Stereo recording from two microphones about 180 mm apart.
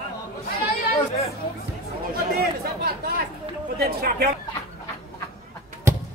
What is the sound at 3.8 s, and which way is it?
Speech, 60° right (ahead or behind).